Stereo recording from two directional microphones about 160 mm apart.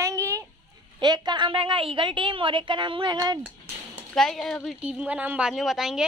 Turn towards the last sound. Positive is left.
turn(degrees=-5)  # may be behind; listen again after turning